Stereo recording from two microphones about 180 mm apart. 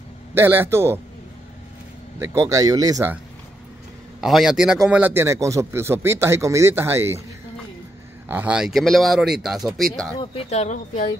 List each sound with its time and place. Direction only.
0.3 s a man's voice: 10° right (ahead or behind)
2.1 s speech: 15° right (ahead or behind)
4.2 s a man's voice: centre (ahead or behind)
8.3 s speech: 10° right (ahead or behind)
10.1 s speech: 35° left (ahead or behind)